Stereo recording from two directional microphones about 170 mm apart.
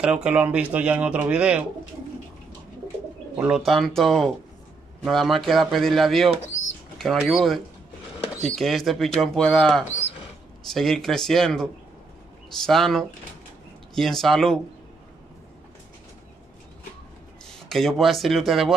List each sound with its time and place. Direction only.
0.0 s speech: 5° right (ahead or behind)
3.3 s speech: 5° right (ahead or behind)
17.6 s speech: centre (ahead or behind)